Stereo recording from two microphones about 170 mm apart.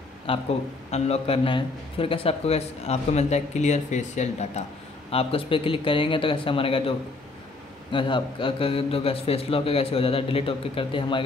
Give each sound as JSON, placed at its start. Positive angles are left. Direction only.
{"t": 0.3, "sound": "a man's voice", "side_deg": 35}